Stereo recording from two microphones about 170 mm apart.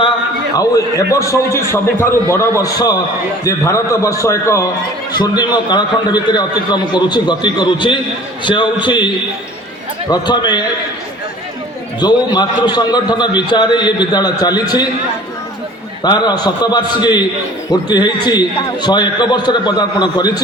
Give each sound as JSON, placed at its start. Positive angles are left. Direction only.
{"t": 0.5, "sound": "a man's voice", "side_deg": 20}
{"t": 10.1, "sound": "a man's voice", "side_deg": 25}
{"t": 11.9, "sound": "a man's voice", "side_deg": 25}
{"t": 16.0, "sound": "a man's voice", "side_deg": 25}